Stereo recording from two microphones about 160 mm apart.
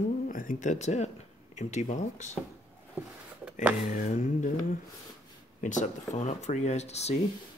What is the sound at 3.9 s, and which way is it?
Speech, 55° left (ahead or behind).